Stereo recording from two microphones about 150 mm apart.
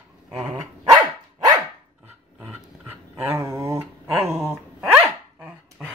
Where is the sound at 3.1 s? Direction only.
20° right (ahead or behind).